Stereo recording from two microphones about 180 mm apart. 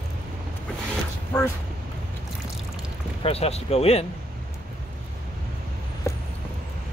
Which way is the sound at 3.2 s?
35° left (ahead or behind).